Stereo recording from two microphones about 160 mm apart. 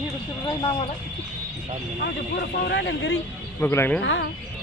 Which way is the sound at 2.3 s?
90° left.